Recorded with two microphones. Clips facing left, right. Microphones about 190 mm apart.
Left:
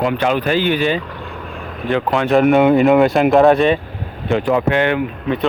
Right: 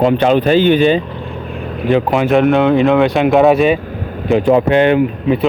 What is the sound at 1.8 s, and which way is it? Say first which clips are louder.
Speech: right 4 dB; 15° right (ahead or behind).